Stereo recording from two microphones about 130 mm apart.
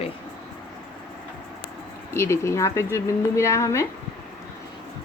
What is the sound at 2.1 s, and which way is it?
A woman's voice, 20° left (ahead or behind).